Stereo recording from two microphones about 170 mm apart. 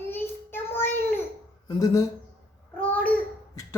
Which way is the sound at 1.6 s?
20° left (ahead or behind).